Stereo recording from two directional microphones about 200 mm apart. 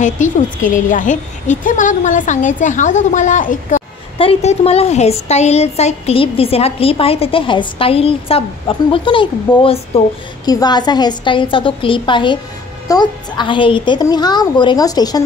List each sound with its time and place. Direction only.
0.0 s a woman's voice: 40° left (ahead or behind); by 15.2 s 20° left (ahead or behind)